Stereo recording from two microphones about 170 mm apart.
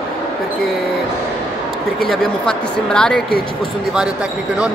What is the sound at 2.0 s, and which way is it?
Speech, centre (ahead or behind).